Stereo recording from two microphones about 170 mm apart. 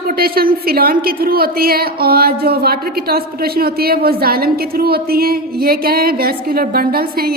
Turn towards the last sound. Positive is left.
turn(degrees=-60)  # may be behind; listen again after turning